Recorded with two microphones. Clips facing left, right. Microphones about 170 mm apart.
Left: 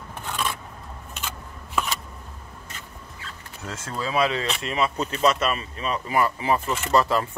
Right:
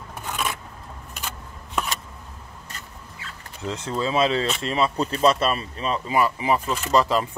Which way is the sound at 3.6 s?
20° right (ahead or behind).